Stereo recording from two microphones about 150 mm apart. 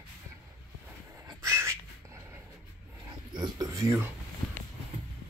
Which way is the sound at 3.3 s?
25° right (ahead or behind).